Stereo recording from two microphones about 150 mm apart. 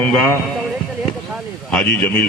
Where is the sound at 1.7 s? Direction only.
10° left (ahead or behind).